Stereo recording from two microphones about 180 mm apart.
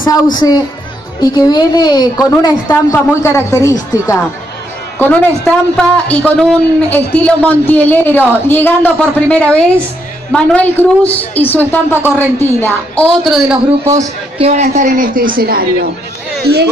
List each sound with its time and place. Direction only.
0.0 s a woman's voice: 25° left (ahead or behind)
4.9 s a man's voice: 10° left (ahead or behind)
14.4 s a man's voice: 40° right (ahead or behind); by 16.6 s 65° right (ahead or behind)